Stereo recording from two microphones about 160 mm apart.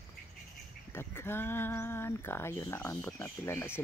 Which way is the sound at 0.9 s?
15° left (ahead or behind).